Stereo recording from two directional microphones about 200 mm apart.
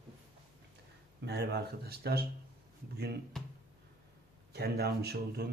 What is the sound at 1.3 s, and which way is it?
Speech, 55° right (ahead or behind).